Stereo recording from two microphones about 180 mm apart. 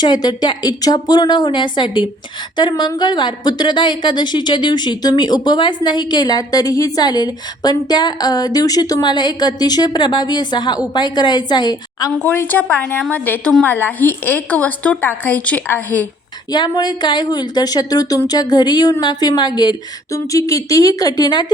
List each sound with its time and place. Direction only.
0.0 s a woman's voice: 25° left (ahead or behind)
12.2 s a woman's voice: 10° left (ahead or behind)
16.5 s a woman's voice: 25° left (ahead or behind)